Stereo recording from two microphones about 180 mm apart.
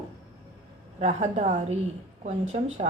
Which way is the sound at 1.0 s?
40° right (ahead or behind).